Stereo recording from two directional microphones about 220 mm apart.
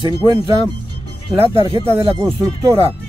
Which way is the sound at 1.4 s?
25° right (ahead or behind).